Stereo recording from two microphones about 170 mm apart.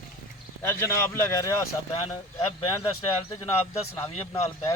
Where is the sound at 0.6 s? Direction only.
15° left (ahead or behind).